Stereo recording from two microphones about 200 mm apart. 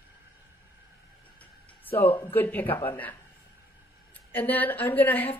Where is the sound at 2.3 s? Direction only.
10° left (ahead or behind).